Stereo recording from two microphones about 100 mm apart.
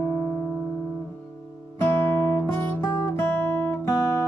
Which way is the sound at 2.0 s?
25° left (ahead or behind).